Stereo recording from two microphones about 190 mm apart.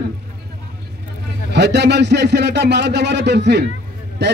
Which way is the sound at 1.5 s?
60° right (ahead or behind).